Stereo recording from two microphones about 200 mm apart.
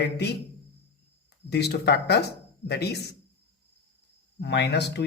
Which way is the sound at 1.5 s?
55° left (ahead or behind).